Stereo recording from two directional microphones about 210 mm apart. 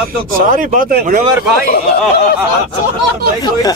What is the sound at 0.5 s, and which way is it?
Speech, 40° right (ahead or behind).